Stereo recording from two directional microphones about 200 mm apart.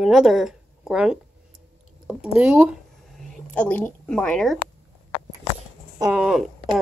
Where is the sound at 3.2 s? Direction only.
5° left (ahead or behind).